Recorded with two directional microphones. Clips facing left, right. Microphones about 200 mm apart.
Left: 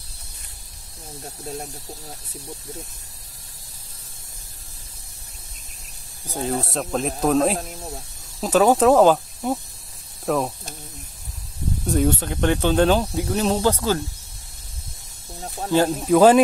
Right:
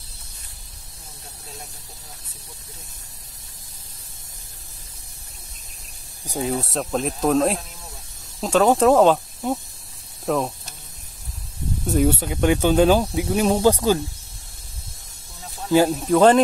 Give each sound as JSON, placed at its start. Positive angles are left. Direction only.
{"t": 6.2, "sound": "speech", "side_deg": -10}
{"t": 6.6, "sound": "speech", "side_deg": 0}
{"t": 7.5, "sound": "snake", "side_deg": 45}
{"t": 8.4, "sound": "speech", "side_deg": 5}
{"t": 11.8, "sound": "speech", "side_deg": -5}
{"t": 15.9, "sound": "speech", "side_deg": 5}